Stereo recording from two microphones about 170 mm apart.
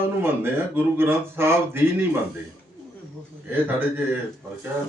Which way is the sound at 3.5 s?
10° right (ahead or behind).